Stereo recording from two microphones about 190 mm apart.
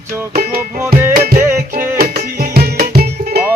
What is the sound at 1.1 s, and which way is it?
Music, 50° right (ahead or behind).